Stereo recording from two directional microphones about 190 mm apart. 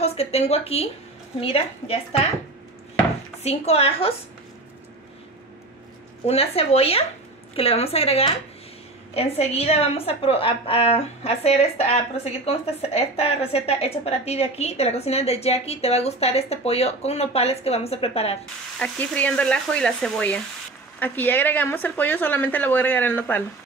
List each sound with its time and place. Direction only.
0.0 s speech: 30° left (ahead or behind)
3.4 s speech: 30° left (ahead or behind)
6.2 s speech: 30° left (ahead or behind)
18.8 s speech: 5° left (ahead or behind)